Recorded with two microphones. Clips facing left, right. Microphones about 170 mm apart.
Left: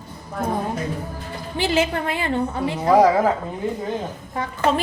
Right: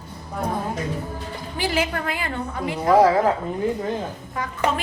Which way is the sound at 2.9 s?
15° left (ahead or behind).